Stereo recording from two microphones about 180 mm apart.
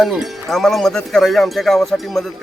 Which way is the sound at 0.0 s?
Centre (ahead or behind).